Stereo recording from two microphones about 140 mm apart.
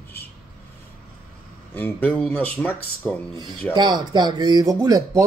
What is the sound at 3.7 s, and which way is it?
Speech, 30° right (ahead or behind).